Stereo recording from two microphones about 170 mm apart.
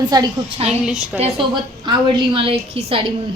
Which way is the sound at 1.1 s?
35° right (ahead or behind).